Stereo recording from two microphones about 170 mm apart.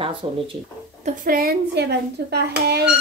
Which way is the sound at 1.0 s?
55° right (ahead or behind).